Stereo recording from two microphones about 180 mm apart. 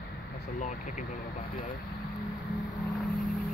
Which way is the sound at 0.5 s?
45° left (ahead or behind).